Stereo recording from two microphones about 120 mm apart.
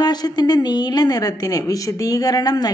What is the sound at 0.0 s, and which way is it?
A woman's voice, 35° left (ahead or behind).